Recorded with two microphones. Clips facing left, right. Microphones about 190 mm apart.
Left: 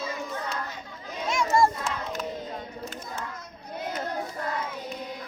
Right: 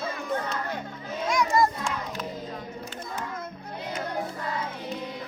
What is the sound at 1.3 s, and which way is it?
Crowd, 25° left (ahead or behind).